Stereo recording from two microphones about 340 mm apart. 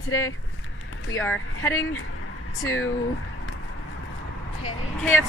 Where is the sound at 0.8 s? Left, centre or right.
Left.